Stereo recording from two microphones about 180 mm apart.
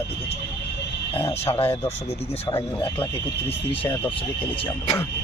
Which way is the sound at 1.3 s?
35° left (ahead or behind).